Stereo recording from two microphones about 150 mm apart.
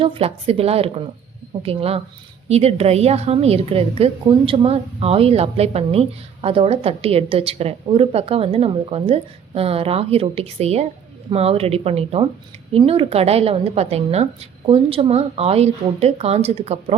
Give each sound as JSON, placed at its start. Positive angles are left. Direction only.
{"t": 0.0, "sound": "a woman's voice", "side_deg": -40}